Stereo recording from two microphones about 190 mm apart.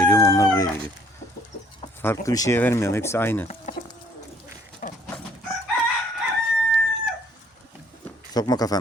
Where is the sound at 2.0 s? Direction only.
15° left (ahead or behind).